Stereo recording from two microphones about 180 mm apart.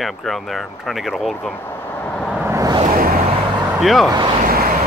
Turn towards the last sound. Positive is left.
turn(degrees=-50)  # may be behind; listen again after turning